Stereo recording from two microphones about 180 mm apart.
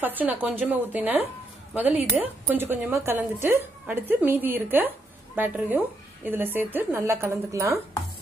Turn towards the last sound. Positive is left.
turn(degrees=-15)  # may be behind; listen again after turning